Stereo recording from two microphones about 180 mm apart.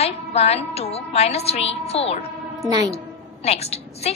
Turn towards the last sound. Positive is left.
turn(degrees=35)  # may be behind; listen again after turning